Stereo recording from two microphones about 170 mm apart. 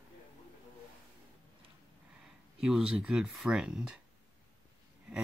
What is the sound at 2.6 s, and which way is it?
Speech, 5° right (ahead or behind).